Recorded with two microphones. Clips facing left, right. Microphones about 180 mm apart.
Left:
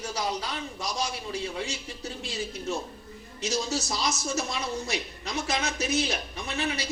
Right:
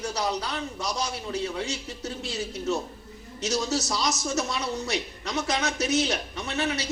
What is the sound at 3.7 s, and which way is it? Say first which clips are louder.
Speech: right 2 dB; 70° right (ahead or behind).